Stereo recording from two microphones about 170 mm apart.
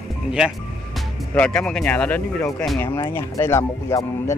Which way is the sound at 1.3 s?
5° left (ahead or behind).